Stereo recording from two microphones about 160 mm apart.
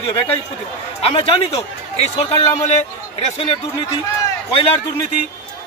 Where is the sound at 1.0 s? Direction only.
35° left (ahead or behind).